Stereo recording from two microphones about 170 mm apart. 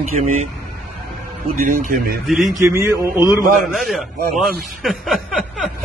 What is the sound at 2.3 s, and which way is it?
Speech, centre (ahead or behind).